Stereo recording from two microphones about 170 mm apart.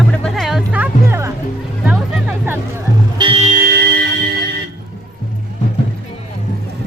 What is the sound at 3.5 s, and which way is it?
Music, 55° right (ahead or behind).